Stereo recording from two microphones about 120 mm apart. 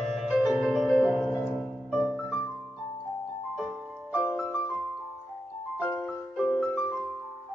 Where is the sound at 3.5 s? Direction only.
5° right (ahead or behind).